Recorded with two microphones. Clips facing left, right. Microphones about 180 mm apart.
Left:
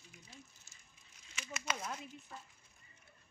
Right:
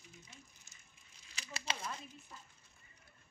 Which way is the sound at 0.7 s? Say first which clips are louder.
Even; 20° right (ahead or behind).